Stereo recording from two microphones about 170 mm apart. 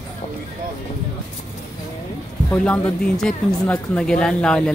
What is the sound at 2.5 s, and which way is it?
Speech, 5° left (ahead or behind).